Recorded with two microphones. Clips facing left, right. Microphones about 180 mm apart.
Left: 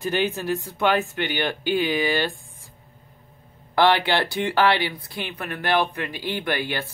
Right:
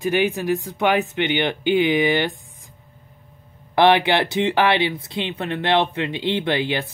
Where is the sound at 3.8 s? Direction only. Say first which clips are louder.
Right 3 dB; 20° right (ahead or behind).